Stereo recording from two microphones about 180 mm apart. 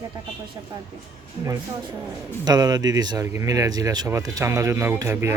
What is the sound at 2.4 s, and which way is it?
Speech, 20° right (ahead or behind).